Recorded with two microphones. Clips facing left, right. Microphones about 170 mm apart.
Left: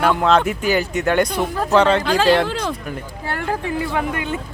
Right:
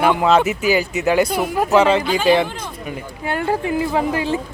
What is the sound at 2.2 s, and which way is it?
Speech, 90° left.